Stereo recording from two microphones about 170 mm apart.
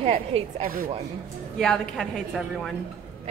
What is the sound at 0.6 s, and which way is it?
Speech, 55° right (ahead or behind).